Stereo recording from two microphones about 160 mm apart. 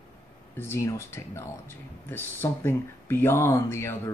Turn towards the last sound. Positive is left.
turn(degrees=15)  # may be behind; listen again after turning